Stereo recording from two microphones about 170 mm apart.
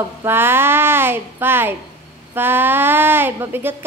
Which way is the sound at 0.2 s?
15° right (ahead or behind).